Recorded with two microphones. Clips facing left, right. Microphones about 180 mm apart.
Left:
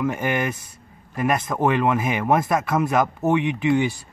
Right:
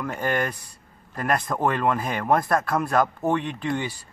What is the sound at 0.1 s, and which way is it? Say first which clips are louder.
A man's voice: left 2 dB; 10° left (ahead or behind).